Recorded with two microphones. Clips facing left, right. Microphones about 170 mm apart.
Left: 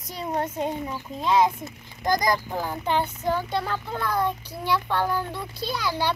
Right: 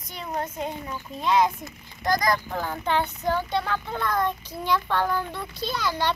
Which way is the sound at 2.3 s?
10° left (ahead or behind).